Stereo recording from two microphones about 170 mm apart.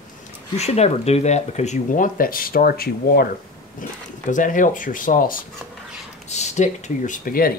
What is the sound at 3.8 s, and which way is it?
Speech, 50° left (ahead or behind).